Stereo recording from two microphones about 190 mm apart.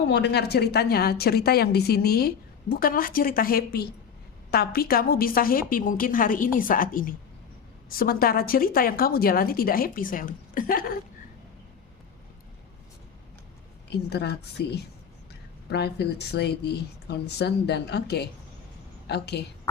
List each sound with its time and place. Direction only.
0.1 s a woman's voice: 60° left (ahead or behind)
13.9 s a woman's voice: 60° left (ahead or behind)
15.7 s a woman's voice: 60° left (ahead or behind)